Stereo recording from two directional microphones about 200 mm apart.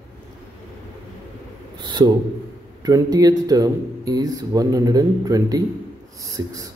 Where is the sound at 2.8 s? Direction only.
20° right (ahead or behind).